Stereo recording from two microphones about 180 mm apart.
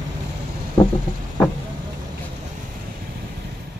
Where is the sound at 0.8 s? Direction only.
15° left (ahead or behind).